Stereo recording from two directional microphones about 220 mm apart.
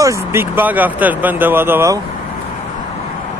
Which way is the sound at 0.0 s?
10° right (ahead or behind).